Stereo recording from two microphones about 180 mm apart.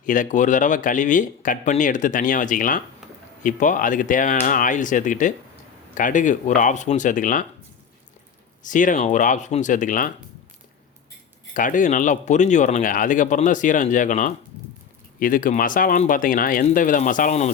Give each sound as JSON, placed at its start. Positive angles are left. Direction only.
{"t": 0.0, "sound": "speech", "side_deg": 45}
{"t": 8.6, "sound": "speech", "side_deg": 45}
{"t": 11.5, "sound": "speech", "side_deg": 45}